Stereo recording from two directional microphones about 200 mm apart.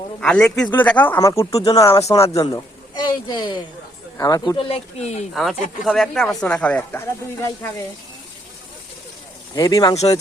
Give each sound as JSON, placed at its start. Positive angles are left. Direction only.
{"t": 0.2, "sound": "speech", "side_deg": 5}
{"t": 2.2, "sound": "speech", "side_deg": 30}
{"t": 2.5, "sound": "a man's voice", "side_deg": 20}
{"t": 5.3, "sound": "speech", "side_deg": 0}
{"t": 9.6, "sound": "speech", "side_deg": 15}